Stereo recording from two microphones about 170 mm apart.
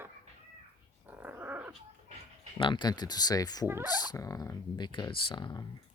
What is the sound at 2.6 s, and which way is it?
Speech, 25° left (ahead or behind).